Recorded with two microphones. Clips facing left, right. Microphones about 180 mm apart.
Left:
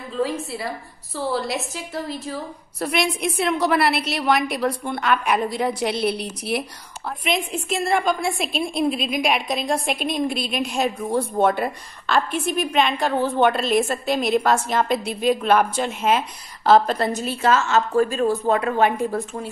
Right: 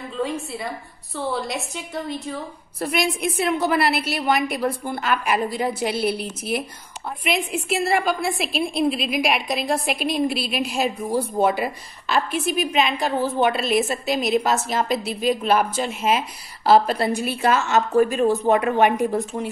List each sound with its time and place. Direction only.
0.2 s a woman's voice: centre (ahead or behind); by 19.5 s 20° right (ahead or behind)